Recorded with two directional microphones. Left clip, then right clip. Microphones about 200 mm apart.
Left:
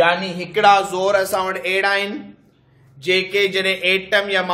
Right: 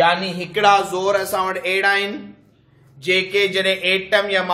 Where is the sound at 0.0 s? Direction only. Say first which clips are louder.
Even; 20° left (ahead or behind).